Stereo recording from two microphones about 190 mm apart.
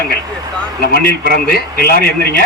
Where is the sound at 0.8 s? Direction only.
50° left (ahead or behind).